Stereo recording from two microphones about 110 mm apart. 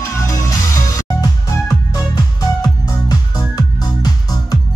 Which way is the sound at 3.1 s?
35° left (ahead or behind).